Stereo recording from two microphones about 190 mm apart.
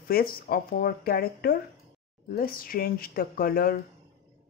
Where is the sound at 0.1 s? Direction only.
50° left (ahead or behind).